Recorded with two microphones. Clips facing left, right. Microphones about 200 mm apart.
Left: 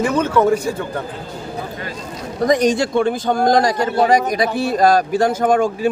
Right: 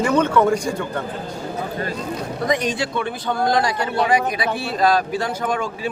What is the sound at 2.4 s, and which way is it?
A man's voice, 45° left (ahead or behind).